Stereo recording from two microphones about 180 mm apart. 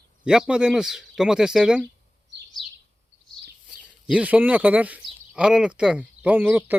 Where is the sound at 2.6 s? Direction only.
30° left (ahead or behind).